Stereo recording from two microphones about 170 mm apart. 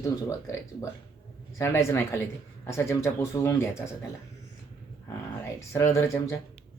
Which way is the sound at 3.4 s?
15° left (ahead or behind).